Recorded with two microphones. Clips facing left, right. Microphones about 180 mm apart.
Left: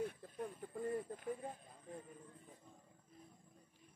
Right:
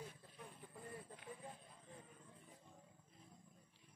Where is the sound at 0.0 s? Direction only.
60° left (ahead or behind).